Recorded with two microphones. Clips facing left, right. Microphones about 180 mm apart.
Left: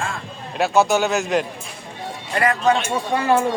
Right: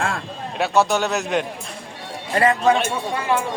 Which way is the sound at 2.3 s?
35° right (ahead or behind).